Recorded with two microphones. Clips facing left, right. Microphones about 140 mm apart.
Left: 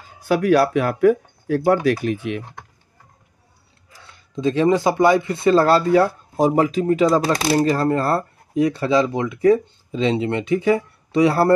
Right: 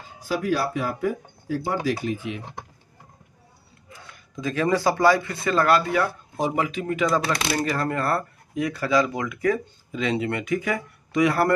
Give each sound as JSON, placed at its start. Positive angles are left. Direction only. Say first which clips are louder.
{"t": 0.2, "sound": "speech", "louder": "left 8 dB", "side_deg": 65}
{"t": 4.1, "sound": "speech", "louder": "left 8 dB", "side_deg": 25}